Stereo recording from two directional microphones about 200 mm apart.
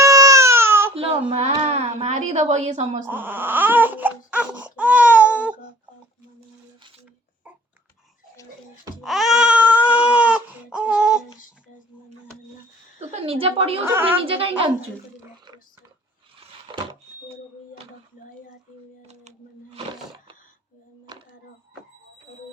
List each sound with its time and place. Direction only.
0.0 s baby cry: 15° right (ahead or behind)
1.3 s a child's voice: 30° right (ahead or behind)
3.1 s baby cry: 10° right (ahead or behind)
9.0 s baby cry: centre (ahead or behind)
13.0 s a woman's voice: 30° right (ahead or behind)
13.8 s baby cry: 10° right (ahead or behind)
14.3 s a woman's voice: 25° right (ahead or behind)